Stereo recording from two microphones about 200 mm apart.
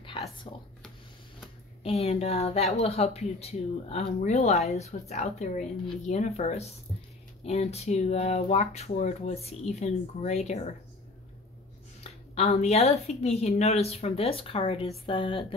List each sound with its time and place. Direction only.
0.5 s speech: 25° left (ahead or behind)
1.8 s speech: 30° left (ahead or behind)
12.0 s speech: 35° left (ahead or behind)